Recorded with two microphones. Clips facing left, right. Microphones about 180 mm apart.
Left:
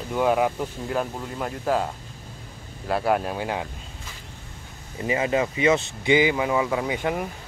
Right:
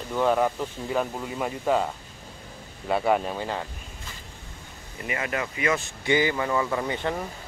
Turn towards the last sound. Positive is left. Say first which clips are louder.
# left 2 dB
turn(degrees=10)  # may be behind; listen again after turning